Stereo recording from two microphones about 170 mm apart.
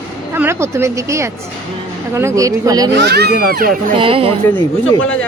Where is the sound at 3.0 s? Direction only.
75° right (ahead or behind).